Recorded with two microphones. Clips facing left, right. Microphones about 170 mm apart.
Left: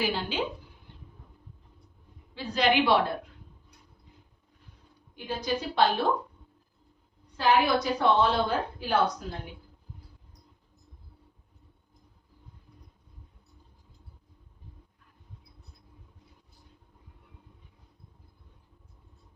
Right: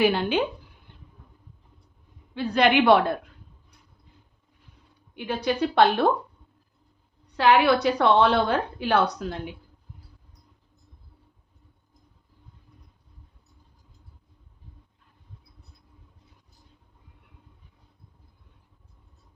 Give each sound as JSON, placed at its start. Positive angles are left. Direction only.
{"t": 0.0, "sound": "a woman's voice", "side_deg": -65}
{"t": 2.3, "sound": "a woman's voice", "side_deg": -60}
{"t": 5.1, "sound": "a woman's voice", "side_deg": -70}
{"t": 7.3, "sound": "a woman's voice", "side_deg": -75}